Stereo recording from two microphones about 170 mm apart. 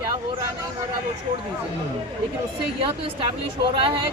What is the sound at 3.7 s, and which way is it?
Speech, 30° right (ahead or behind).